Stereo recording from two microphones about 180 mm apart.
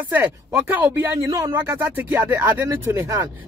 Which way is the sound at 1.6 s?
10° right (ahead or behind).